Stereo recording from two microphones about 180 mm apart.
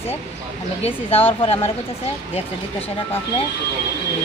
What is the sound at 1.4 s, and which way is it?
Speech, 30° left (ahead or behind).